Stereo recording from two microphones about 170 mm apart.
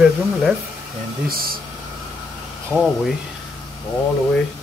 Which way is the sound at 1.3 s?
60° right (ahead or behind).